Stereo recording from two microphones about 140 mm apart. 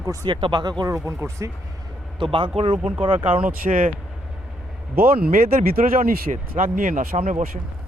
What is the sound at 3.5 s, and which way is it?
Speech, 75° right (ahead or behind).